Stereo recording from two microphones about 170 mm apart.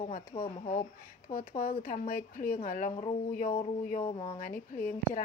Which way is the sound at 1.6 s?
55° left (ahead or behind).